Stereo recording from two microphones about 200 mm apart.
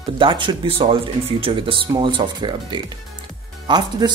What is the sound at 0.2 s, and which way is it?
Speech, 25° right (ahead or behind).